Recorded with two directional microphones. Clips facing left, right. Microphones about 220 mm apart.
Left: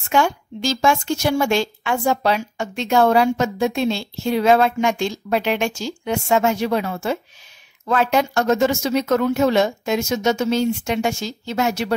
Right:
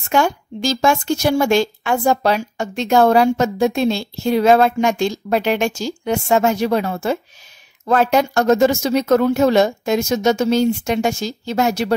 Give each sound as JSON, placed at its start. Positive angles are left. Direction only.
{"t": 0.1, "sound": "a woman's voice", "side_deg": -40}